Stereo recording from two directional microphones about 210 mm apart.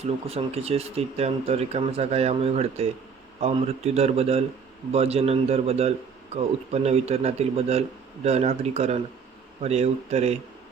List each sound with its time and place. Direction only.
0.3 s a man's voice: 30° right (ahead or behind)